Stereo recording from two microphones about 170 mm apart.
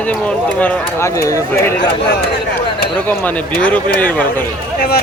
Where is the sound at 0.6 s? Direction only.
15° left (ahead or behind).